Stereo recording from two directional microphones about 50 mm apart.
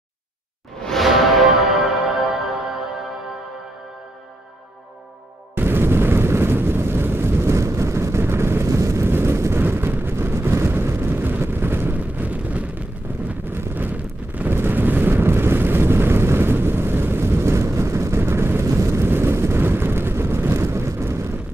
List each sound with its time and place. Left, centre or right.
1.0 s music: centre
5.6 s vehicle: right
7.5 s vehicle: right
9.0 s vehicle: right
12.0 s a sound: right
13.5 s wind noise: right
14.5 s vehicle: right
19.0 s vehicle: right